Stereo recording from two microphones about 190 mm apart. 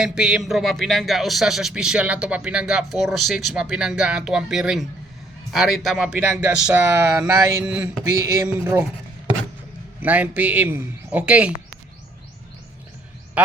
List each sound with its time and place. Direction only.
0.0 s a man's voice: 5° right (ahead or behind)
8.0 s a man's voice: 15° right (ahead or behind)
10.0 s a man's voice: 10° right (ahead or behind)